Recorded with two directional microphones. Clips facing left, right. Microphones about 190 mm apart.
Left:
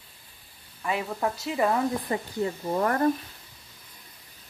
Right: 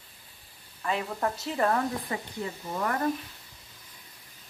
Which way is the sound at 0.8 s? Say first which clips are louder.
Left 1 dB; 10° left (ahead or behind).